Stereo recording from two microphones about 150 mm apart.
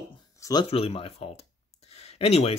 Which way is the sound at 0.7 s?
40° left (ahead or behind).